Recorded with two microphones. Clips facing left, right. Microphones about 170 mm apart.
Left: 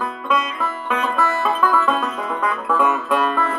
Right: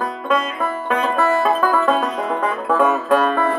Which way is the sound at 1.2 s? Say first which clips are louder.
Right 3 dB; 40° right (ahead or behind).